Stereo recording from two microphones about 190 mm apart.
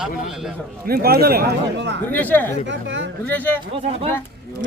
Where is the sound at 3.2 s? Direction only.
10° left (ahead or behind).